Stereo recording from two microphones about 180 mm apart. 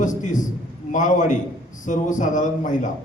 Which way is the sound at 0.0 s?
45° left (ahead or behind).